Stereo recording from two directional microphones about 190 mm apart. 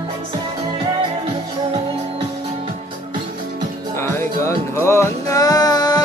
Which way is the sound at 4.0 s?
15° left (ahead or behind).